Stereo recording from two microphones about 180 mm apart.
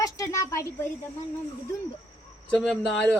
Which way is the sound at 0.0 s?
15° left (ahead or behind).